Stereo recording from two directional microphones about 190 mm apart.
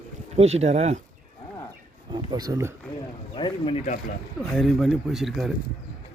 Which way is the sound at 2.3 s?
20° right (ahead or behind).